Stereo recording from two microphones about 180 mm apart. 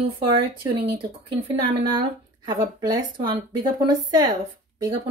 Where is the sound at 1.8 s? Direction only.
25° right (ahead or behind).